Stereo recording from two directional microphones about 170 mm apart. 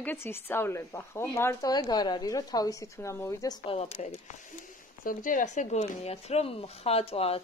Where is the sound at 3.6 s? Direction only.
35° left (ahead or behind).